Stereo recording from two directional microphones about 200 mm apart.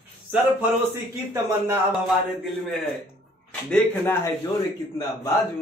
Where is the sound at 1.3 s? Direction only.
15° right (ahead or behind).